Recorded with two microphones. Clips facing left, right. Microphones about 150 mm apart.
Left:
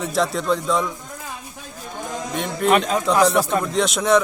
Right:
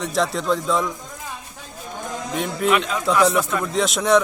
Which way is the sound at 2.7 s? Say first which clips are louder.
Left 3 dB; 40° left (ahead or behind).